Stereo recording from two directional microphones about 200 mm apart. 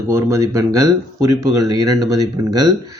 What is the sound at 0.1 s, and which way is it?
Speech, 15° right (ahead or behind).